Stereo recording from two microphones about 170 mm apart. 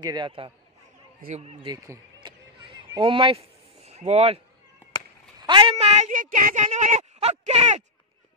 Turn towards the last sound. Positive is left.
turn(degrees=-45)  # may be behind; listen again after turning